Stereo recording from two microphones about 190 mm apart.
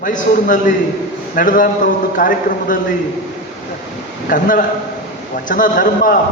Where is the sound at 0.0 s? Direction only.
45° left (ahead or behind).